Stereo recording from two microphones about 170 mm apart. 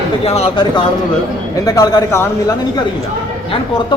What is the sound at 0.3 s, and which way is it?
Speech, 35° left (ahead or behind).